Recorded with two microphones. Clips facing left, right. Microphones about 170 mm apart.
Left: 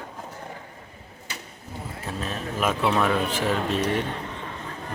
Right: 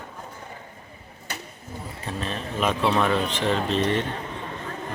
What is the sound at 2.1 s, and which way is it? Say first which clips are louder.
Speech: right 1 dB; 5° left (ahead or behind).